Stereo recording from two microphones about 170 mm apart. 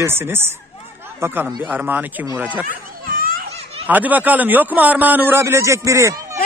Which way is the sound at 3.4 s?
35° right (ahead or behind).